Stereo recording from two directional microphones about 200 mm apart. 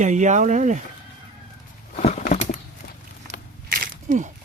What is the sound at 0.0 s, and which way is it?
Speech, 35° right (ahead or behind).